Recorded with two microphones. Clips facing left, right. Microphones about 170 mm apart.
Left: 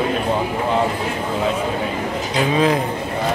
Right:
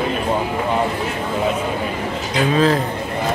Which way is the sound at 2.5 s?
15° left (ahead or behind).